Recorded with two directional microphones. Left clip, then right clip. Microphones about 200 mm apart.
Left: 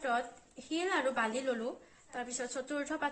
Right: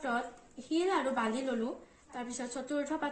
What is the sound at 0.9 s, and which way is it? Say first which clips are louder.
A woman's voice: left 4 dB; 40° left (ahead or behind).